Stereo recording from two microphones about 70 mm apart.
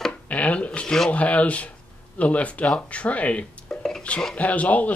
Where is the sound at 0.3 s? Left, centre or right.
Centre.